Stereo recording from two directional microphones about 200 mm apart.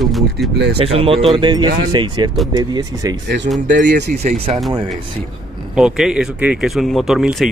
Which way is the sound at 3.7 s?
60° right (ahead or behind).